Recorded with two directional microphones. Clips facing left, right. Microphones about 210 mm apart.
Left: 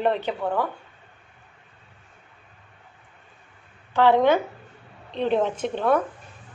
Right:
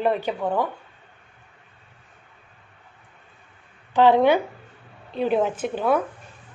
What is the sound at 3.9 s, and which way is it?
A woman's voice, 15° right (ahead or behind).